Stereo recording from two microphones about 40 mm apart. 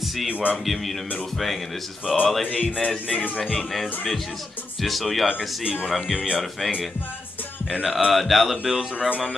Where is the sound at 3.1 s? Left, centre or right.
Left.